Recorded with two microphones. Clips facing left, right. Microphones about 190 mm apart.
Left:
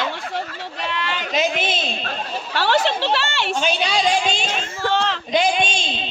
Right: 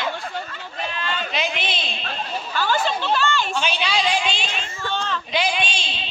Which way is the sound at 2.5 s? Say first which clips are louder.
Left 4 dB; 75° left (ahead or behind).